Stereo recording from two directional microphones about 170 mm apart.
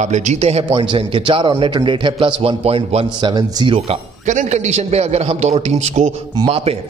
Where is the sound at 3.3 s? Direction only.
25° right (ahead or behind).